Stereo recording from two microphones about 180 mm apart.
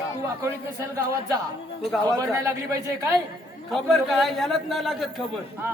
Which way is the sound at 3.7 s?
Centre (ahead or behind).